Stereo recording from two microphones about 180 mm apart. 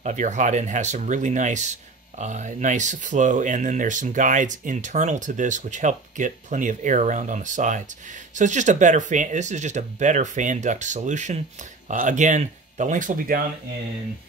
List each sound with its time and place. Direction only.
0.0 s speech: 40° right (ahead or behind)